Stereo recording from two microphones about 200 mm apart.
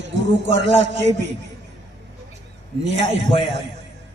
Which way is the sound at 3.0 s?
60° right (ahead or behind).